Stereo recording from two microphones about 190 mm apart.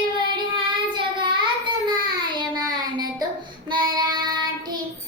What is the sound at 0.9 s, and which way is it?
Child singing, 25° right (ahead or behind).